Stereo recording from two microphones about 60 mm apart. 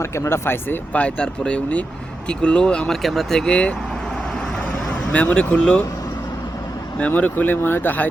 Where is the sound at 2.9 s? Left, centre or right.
Centre.